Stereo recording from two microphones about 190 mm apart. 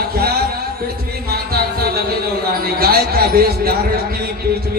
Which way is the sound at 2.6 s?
55° right (ahead or behind).